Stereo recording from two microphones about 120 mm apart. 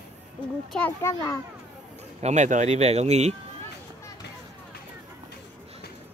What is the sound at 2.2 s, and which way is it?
Speech, 75° right (ahead or behind).